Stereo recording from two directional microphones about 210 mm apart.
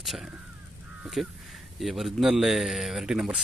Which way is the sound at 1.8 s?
Centre (ahead or behind).